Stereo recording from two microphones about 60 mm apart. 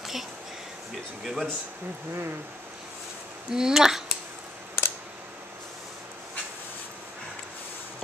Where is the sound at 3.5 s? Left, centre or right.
Centre.